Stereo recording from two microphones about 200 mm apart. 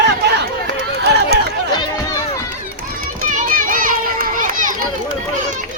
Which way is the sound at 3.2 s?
40° right (ahead or behind).